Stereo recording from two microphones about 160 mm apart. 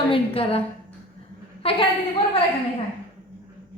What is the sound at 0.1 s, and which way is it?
Speech, 35° left (ahead or behind).